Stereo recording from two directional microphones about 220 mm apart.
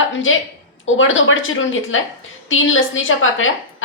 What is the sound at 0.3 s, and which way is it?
A woman's voice, 65° left (ahead or behind).